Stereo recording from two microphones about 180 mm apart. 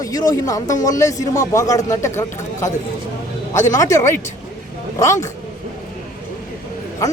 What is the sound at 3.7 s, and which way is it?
Speech, 15° left (ahead or behind).